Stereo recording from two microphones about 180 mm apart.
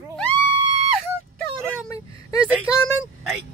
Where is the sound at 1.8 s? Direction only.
20° left (ahead or behind).